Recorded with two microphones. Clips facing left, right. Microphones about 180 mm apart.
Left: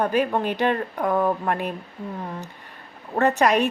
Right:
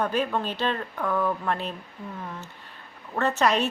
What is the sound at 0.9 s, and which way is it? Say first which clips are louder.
Speech: left 4 dB; 35° left (ahead or behind).